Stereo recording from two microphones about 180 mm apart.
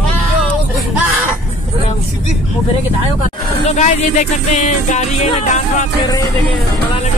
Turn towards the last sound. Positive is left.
turn(degrees=45)  # may be behind; listen again after turning